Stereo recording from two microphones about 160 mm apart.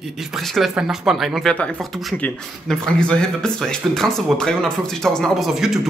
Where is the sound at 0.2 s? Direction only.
Centre (ahead or behind).